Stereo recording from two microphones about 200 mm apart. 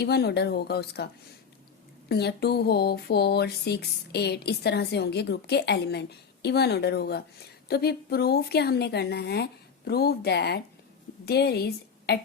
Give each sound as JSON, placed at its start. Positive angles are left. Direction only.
{"t": 0.0, "sound": "speech", "side_deg": 55}
{"t": 2.0, "sound": "a sound", "side_deg": 55}
{"t": 11.3, "sound": "a woman's voice", "side_deg": 55}